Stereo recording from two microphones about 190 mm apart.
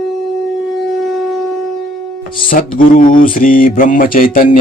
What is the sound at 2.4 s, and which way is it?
Speech, 45° left (ahead or behind).